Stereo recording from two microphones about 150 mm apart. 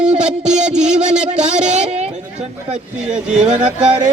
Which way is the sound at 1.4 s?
50° right (ahead or behind).